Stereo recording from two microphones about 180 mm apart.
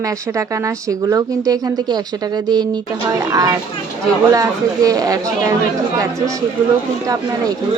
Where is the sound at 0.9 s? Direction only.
20° right (ahead or behind).